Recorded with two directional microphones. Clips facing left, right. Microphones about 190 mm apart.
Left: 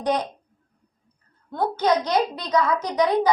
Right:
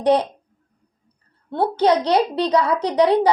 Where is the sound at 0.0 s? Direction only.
30° right (ahead or behind).